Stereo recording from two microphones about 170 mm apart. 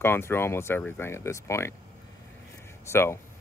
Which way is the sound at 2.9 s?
15° left (ahead or behind).